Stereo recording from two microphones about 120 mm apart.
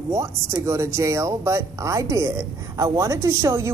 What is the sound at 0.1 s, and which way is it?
A woman's voice, 25° right (ahead or behind).